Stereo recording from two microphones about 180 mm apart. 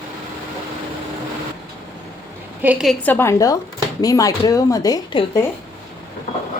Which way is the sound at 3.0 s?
10° left (ahead or behind).